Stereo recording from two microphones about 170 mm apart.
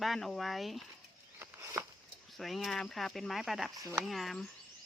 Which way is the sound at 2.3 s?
Centre (ahead or behind).